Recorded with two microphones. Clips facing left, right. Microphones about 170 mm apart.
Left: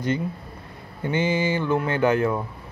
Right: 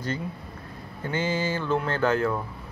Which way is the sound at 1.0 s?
15° left (ahead or behind).